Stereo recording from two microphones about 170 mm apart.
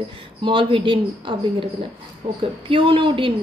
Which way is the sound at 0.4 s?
30° right (ahead or behind).